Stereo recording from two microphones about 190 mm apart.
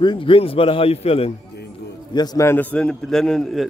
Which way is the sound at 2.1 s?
20° left (ahead or behind).